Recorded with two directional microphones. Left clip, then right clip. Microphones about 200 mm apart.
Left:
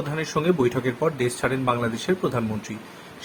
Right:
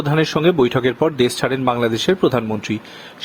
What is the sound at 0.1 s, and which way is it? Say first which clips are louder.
Speech: right 8 dB; 40° right (ahead or behind).